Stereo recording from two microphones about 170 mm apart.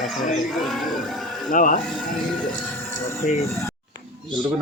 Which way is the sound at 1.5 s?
50° left (ahead or behind).